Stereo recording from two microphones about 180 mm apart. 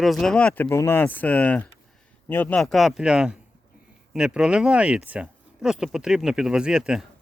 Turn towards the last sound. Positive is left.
turn(degrees=-5)  # may be behind; listen again after turning